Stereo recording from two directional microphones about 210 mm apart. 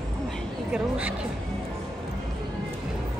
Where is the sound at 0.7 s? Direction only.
5° right (ahead or behind).